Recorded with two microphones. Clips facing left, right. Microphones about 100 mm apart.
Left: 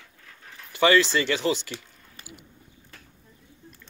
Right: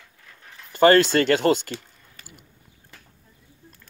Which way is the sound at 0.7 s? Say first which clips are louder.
Right 5 dB; 50° right (ahead or behind).